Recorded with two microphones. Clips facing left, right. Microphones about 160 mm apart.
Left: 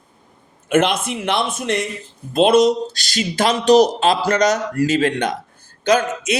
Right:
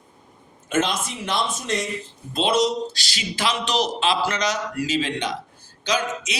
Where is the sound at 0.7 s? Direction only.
60° left (ahead or behind).